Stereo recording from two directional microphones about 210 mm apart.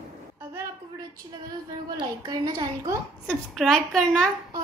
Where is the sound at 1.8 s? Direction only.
20° right (ahead or behind).